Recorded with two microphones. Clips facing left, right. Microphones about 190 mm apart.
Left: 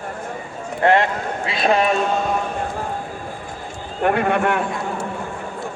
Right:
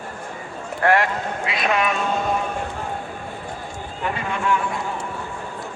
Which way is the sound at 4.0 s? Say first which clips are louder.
Left 9 dB; 60° left (ahead or behind).